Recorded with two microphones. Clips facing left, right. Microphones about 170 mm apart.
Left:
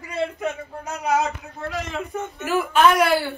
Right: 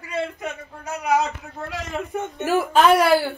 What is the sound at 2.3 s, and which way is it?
Speech, 35° right (ahead or behind).